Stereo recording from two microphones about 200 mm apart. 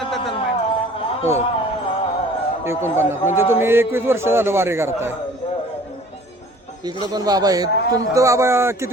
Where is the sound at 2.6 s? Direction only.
10° right (ahead or behind).